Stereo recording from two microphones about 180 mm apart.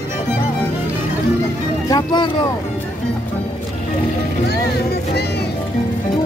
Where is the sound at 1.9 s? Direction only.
25° left (ahead or behind).